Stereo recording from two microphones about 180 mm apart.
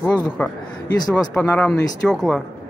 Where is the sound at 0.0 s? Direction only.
10° left (ahead or behind).